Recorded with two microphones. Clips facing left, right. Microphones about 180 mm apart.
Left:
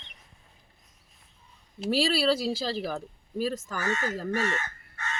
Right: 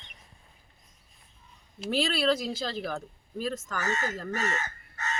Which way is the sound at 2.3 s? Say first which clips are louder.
Left 4 dB; 30° left (ahead or behind).